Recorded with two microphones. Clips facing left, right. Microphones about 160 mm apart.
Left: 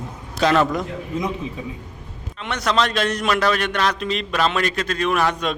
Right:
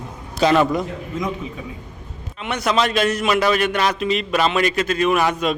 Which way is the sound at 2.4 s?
10° right (ahead or behind).